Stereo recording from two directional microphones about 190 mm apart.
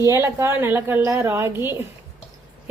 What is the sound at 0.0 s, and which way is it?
A woman's voice, 15° right (ahead or behind).